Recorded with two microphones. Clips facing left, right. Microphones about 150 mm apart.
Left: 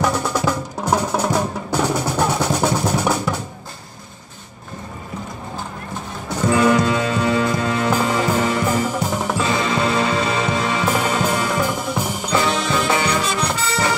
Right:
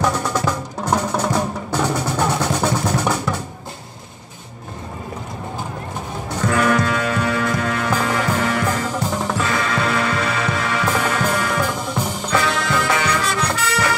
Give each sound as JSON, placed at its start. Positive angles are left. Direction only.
{"t": 0.0, "sound": "percussion", "side_deg": 10}
{"t": 6.5, "sound": "music", "side_deg": 20}
{"t": 8.6, "sound": "music", "side_deg": 10}
{"t": 9.4, "sound": "music", "side_deg": 20}
{"t": 12.4, "sound": "music", "side_deg": 20}